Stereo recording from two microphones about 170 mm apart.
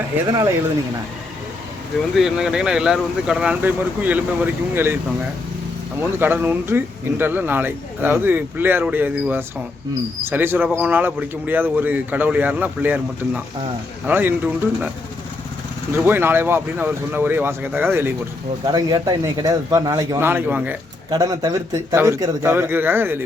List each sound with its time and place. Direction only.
0.3 s speech: 20° right (ahead or behind)
2.1 s speech: 5° right (ahead or behind)
6.0 s speech: 10° right (ahead or behind)
16.0 s speech: 15° right (ahead or behind)
18.6 s speech: 20° right (ahead or behind)
21.1 s speech: 25° right (ahead or behind)